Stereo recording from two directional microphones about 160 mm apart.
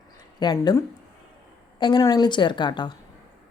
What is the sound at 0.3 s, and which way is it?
A woman's voice, 25° left (ahead or behind).